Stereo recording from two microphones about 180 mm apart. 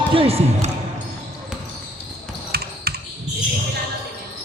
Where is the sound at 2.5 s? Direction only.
60° right (ahead or behind).